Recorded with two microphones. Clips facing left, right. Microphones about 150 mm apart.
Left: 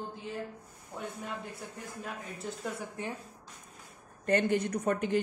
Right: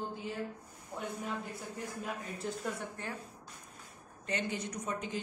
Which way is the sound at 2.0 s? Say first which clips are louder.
Even; centre (ahead or behind).